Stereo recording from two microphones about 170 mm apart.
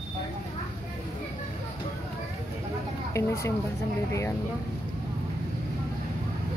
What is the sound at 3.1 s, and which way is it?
Speech, 15° left (ahead or behind).